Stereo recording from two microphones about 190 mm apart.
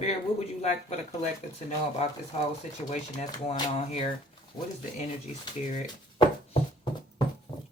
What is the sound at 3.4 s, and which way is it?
Speech, 35° left (ahead or behind).